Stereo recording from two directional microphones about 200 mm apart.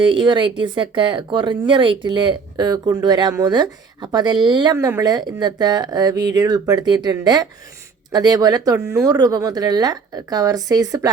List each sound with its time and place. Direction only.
0.0 s speech: 25° right (ahead or behind)